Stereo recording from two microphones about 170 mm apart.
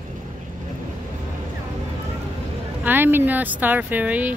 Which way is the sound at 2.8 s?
10° right (ahead or behind).